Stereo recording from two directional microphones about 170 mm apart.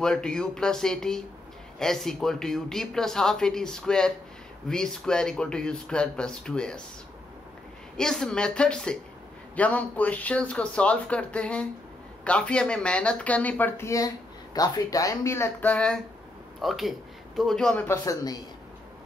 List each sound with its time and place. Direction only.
0.0 s speech: 5° left (ahead or behind)
8.0 s speech: 5° left (ahead or behind)
17.8 s a man's voice: 20° left (ahead or behind)